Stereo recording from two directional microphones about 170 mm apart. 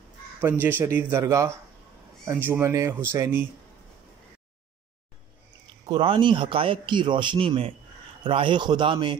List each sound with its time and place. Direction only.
0.4 s speech: 10° right (ahead or behind)
5.9 s speech: 30° right (ahead or behind)